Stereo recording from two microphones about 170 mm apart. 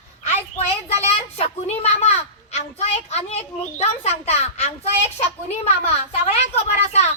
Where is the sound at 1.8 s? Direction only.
40° left (ahead or behind).